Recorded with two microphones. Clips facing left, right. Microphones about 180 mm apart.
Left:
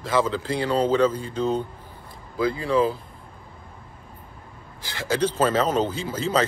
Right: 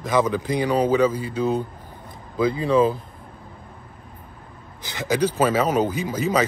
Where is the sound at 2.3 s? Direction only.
20° right (ahead or behind).